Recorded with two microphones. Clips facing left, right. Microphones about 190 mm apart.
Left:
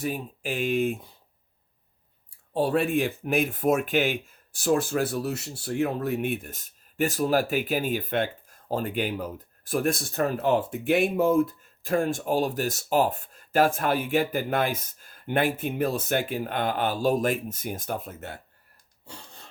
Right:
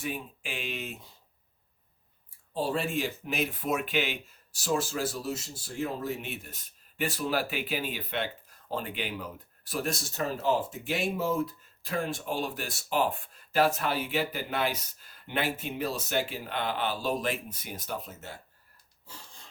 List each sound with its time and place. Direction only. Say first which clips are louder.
0.0 s speech: left 6 dB; 40° left (ahead or behind)
2.5 s speech: left 7 dB; 60° left (ahead or behind)
19.0 s wheeze: left 5 dB; 65° left (ahead or behind)